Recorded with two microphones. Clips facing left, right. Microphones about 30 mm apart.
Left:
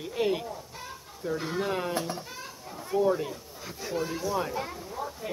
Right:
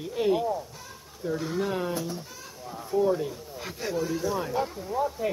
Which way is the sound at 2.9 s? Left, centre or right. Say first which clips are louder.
Right 1 dB; centre.